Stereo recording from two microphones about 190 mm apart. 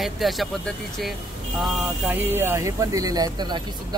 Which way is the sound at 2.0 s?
10° right (ahead or behind).